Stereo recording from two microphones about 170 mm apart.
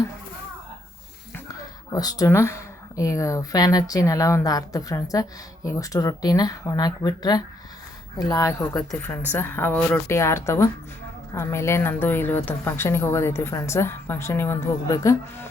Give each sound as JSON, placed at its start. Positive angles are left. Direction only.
{"t": 1.9, "sound": "a woman's voice", "side_deg": 20}